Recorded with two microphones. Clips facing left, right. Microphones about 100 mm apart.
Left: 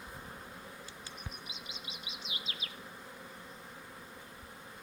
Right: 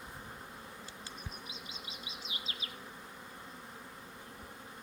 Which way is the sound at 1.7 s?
35° right (ahead or behind).